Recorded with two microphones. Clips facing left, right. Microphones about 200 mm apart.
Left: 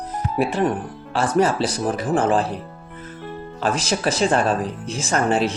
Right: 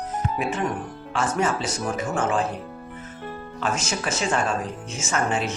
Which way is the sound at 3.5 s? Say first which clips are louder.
Left 5 dB; 35° left (ahead or behind).